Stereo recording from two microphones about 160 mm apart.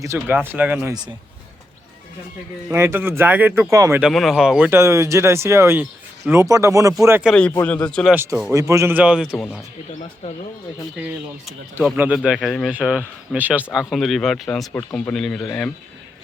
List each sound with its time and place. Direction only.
0.0 s speech: 15° right (ahead or behind)
2.6 s speech: 15° right (ahead or behind)
4.0 s speech: centre (ahead or behind); by 7.2 s 20° right (ahead or behind)
7.6 s speech: 10° left (ahead or behind)
8.1 s speech: 15° right (ahead or behind)
10.9 s speech: 10° right (ahead or behind)
14.7 s speech: 15° left (ahead or behind)